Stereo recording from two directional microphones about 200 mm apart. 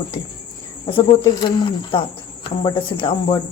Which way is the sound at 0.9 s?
20° left (ahead or behind).